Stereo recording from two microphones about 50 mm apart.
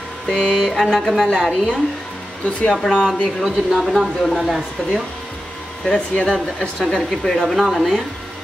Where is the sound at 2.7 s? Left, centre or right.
Centre.